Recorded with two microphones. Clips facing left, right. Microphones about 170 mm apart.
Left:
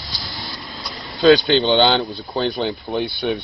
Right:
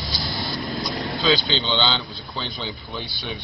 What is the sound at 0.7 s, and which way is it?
Vehicle, 55° right (ahead or behind).